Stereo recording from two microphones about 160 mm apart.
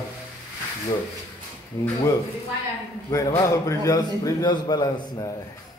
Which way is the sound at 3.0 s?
20° left (ahead or behind).